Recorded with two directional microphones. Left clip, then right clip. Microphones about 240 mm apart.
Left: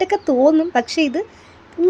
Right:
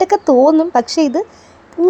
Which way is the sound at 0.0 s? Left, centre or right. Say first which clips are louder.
Right 5 dB; centre.